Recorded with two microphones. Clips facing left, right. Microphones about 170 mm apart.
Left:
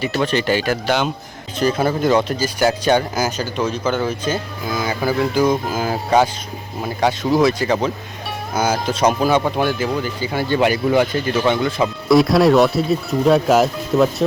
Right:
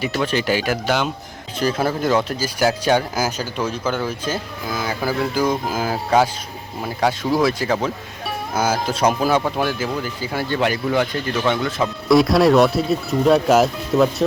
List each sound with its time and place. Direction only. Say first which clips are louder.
0.0 s speech: left 2 dB; 5° right (ahead or behind)